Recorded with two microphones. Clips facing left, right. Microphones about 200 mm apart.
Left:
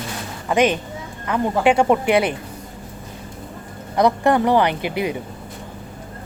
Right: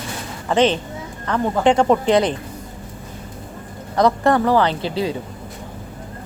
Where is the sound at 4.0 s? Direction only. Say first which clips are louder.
Even; 15° left (ahead or behind).